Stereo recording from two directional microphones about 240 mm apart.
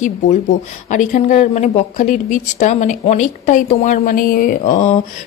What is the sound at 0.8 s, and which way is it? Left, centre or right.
Speech, left.